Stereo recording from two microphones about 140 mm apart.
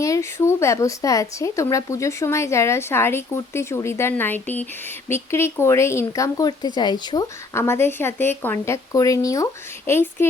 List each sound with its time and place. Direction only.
0.0 s speech: 20° left (ahead or behind)
7.5 s a woman's voice: 20° left (ahead or behind)